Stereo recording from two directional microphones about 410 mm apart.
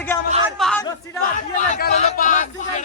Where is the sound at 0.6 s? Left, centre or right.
Centre.